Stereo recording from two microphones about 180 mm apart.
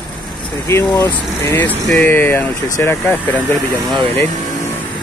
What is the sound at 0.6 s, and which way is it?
Speech, 10° left (ahead or behind).